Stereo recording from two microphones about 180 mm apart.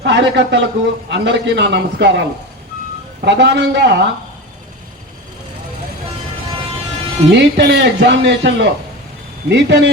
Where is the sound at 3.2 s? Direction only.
75° right (ahead or behind).